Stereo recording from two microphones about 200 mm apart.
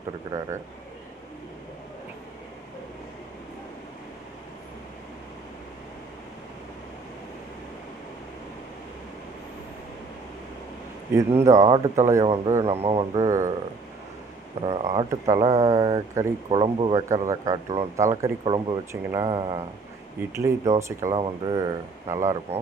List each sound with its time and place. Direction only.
0.3 s speech: 15° right (ahead or behind)
11.1 s speech: 15° right (ahead or behind)
12.6 s speech: 30° right (ahead or behind)
13.1 s speech: 15° right (ahead or behind)
14.6 s speech: 30° right (ahead or behind)
14.8 s speech: 15° right (ahead or behind)